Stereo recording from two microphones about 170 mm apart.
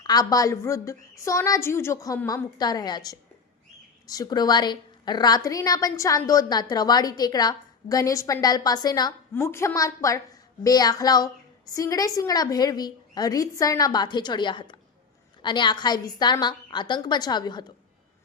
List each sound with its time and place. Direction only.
0.0 s a woman's voice: 25° left (ahead or behind)